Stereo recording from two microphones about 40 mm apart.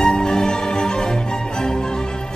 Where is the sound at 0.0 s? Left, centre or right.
Centre.